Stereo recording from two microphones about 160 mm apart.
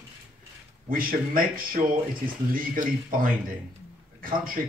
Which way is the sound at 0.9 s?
60° right (ahead or behind).